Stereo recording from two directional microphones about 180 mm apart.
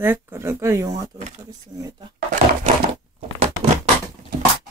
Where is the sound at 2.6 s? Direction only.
35° right (ahead or behind).